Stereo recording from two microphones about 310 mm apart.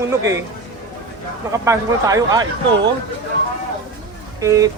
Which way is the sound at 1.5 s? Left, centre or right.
Centre.